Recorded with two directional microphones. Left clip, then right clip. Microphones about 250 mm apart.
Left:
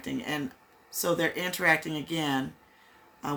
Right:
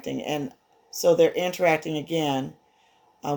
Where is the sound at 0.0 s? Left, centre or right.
Left.